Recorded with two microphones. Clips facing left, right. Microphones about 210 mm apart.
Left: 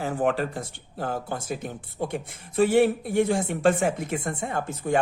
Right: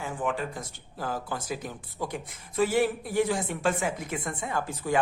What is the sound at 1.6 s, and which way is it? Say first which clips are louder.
Speech: left 4 dB; 25° left (ahead or behind).